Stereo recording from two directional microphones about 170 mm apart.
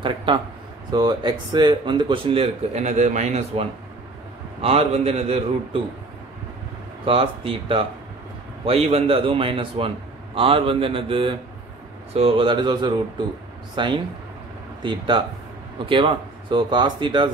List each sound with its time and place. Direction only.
0.0 s speech: 30° right (ahead or behind)
7.1 s speech: 30° right (ahead or behind)